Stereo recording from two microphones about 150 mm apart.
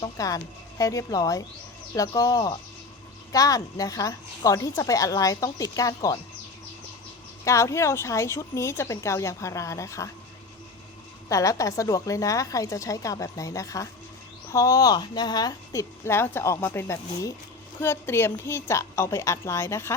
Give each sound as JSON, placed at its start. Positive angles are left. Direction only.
{"t": 0.0, "sound": "speech", "side_deg": 25}
{"t": 7.4, "sound": "speech", "side_deg": 20}
{"t": 11.3, "sound": "a woman's voice", "side_deg": 20}